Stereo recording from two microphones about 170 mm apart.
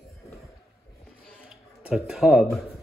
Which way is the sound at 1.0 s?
Centre (ahead or behind).